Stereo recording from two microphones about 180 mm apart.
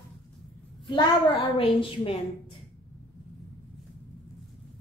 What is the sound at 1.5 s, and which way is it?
Speech, 30° left (ahead or behind).